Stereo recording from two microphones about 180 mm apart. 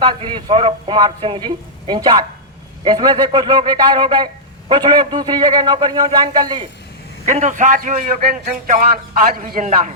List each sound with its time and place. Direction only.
0.0 s speech: 25° right (ahead or behind)
7.3 s a man's voice: 40° right (ahead or behind)